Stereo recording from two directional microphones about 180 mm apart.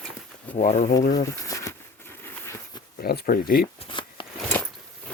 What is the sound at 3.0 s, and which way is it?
Speech, 60° left (ahead or behind).